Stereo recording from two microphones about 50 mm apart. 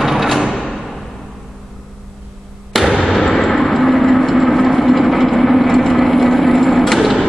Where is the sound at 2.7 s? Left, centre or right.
Centre.